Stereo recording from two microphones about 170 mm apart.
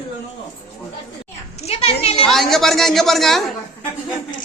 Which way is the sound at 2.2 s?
Centre (ahead or behind).